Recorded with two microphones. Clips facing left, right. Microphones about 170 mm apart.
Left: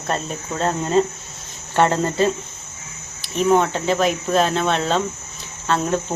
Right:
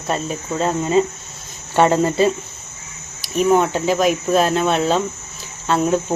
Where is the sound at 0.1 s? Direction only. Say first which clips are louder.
Right 3 dB; 5° right (ahead or behind).